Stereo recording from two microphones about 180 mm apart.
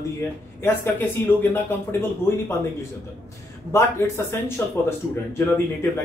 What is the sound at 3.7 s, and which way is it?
Speech, 15° left (ahead or behind).